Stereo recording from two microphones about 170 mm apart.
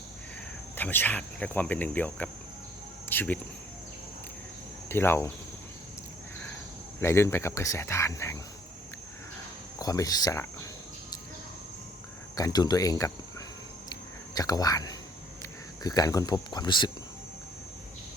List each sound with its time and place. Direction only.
0.8 s cricket: 10° left (ahead or behind)
4.9 s cricket: 15° left (ahead or behind)
7.0 s cricket: 15° left (ahead or behind)
9.7 s speech: 20° left (ahead or behind)
12.4 s speech: 20° left (ahead or behind)
13.9 s whispering: 20° left (ahead or behind)
15.8 s speech: 20° left (ahead or behind)